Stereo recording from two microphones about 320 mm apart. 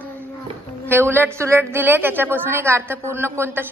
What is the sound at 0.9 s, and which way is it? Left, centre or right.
A man's voice, centre.